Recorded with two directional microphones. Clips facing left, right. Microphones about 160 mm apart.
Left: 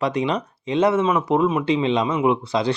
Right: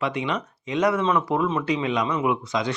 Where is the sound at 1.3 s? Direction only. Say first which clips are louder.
Left 4 dB; 15° left (ahead or behind).